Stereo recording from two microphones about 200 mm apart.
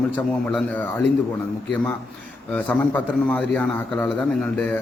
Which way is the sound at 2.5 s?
10° left (ahead or behind).